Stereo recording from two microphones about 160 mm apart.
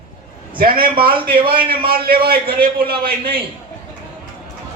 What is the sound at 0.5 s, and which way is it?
A man's voice, 65° right (ahead or behind).